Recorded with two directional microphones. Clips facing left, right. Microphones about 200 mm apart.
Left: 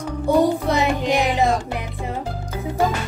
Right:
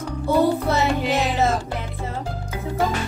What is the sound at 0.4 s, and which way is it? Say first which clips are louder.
Music: even; 15° left (ahead or behind).